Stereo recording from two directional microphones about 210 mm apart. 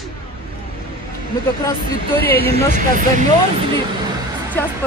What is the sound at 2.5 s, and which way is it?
Speech, 35° right (ahead or behind).